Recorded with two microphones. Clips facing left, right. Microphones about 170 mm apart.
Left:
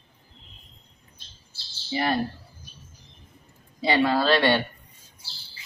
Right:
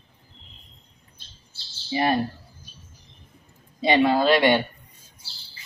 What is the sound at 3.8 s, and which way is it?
Speech, 20° right (ahead or behind).